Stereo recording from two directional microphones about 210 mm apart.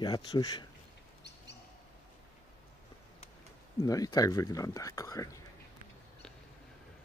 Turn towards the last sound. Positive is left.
turn(degrees=15)  # may be behind; listen again after turning